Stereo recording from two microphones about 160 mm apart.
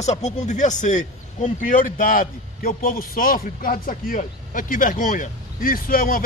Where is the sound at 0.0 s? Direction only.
45° left (ahead or behind).